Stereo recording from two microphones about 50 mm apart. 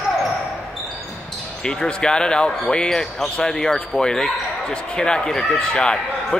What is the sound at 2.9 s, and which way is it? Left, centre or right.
Speech, centre.